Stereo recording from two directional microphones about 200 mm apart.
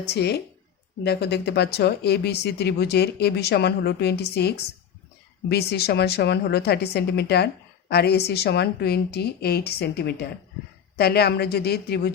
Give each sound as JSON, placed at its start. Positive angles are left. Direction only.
{"t": 0.0, "sound": "a woman's voice", "side_deg": 55}